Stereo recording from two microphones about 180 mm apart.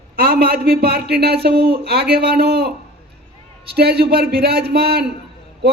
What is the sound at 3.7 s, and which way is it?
A man's voice, 60° right (ahead or behind).